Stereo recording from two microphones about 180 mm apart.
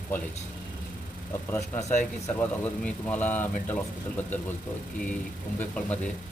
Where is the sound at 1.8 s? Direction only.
40° left (ahead or behind).